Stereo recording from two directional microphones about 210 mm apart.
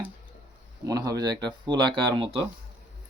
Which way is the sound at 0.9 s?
15° right (ahead or behind).